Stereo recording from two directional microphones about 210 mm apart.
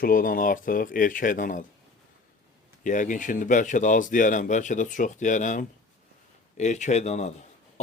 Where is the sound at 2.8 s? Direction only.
40° left (ahead or behind).